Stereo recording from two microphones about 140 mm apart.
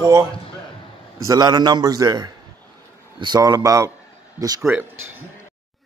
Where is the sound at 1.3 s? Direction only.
30° right (ahead or behind).